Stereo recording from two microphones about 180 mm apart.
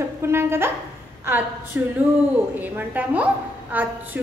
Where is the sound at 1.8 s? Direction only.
15° right (ahead or behind).